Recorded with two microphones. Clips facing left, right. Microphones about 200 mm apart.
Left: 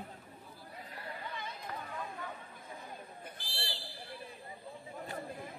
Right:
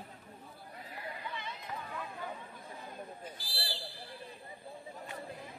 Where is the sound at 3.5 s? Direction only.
35° right (ahead or behind).